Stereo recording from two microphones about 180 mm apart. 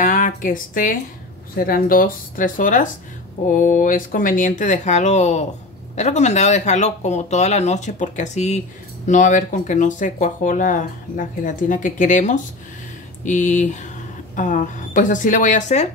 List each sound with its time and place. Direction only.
0.0 s speech: 45° left (ahead or behind)